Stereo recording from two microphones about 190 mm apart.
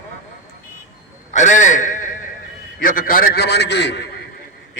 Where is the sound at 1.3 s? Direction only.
40° left (ahead or behind).